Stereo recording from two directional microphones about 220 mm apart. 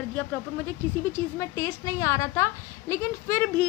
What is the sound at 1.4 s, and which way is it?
A woman's voice, 15° left (ahead or behind).